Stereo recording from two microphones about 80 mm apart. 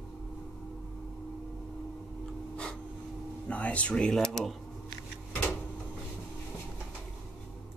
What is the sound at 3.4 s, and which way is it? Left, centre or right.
Speech, centre.